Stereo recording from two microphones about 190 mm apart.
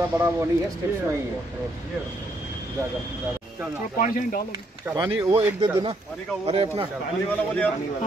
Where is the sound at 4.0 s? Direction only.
45° left (ahead or behind).